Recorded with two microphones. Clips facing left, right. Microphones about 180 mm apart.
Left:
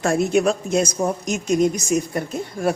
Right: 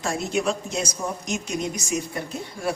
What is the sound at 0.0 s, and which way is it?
A woman's voice, 55° left (ahead or behind).